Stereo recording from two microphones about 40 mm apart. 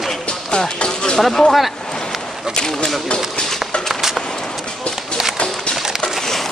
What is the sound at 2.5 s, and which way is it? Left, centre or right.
Speech, centre.